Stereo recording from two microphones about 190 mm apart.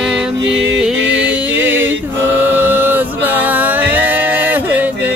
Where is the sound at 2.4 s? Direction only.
10° right (ahead or behind).